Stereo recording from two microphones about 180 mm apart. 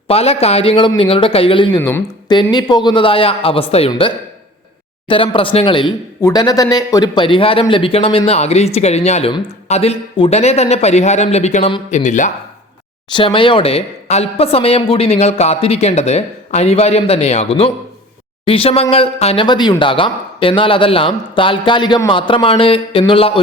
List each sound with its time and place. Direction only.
0.1 s a woman's voice: 35° left (ahead or behind)
13.1 s a woman's voice: 25° left (ahead or behind)